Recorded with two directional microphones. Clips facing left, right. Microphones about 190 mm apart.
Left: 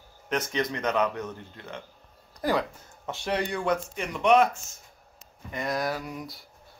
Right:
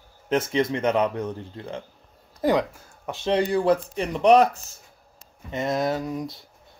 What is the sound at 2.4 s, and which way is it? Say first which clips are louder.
Speech: right 5 dB; 20° right (ahead or behind).